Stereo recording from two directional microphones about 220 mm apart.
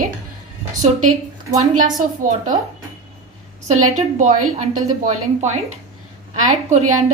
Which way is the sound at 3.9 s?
35° right (ahead or behind).